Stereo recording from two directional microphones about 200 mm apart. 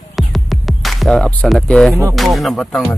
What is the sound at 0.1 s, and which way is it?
Music, centre (ahead or behind).